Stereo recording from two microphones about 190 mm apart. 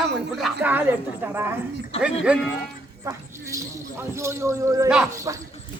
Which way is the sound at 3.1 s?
15° right (ahead or behind).